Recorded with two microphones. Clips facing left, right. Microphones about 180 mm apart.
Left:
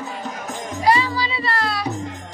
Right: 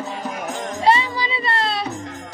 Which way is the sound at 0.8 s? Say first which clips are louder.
Even; 20° right (ahead or behind).